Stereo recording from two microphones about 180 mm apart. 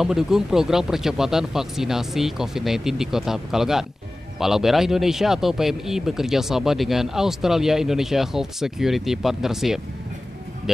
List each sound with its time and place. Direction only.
0.0 s speech: 5° right (ahead or behind)